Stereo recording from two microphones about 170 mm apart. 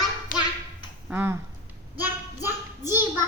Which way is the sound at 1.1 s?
10° right (ahead or behind).